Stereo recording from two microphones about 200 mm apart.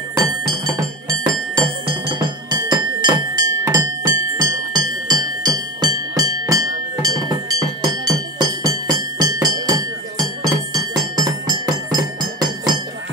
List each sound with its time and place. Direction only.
0.5 s music: 20° right (ahead or behind)
2.7 s music: 20° right (ahead or behind)